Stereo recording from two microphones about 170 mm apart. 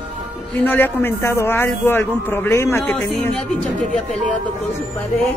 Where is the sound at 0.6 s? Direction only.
10° left (ahead or behind).